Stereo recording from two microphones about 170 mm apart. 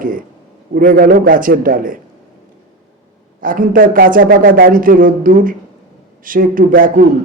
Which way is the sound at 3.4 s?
55° right (ahead or behind).